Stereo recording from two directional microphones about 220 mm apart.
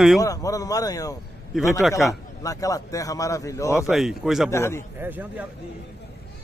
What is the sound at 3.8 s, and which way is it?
Speech, centre (ahead or behind).